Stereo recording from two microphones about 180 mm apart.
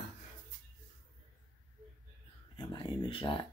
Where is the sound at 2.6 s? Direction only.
25° left (ahead or behind).